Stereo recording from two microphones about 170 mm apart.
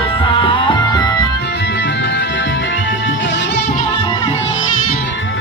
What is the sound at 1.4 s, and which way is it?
Music, 85° left.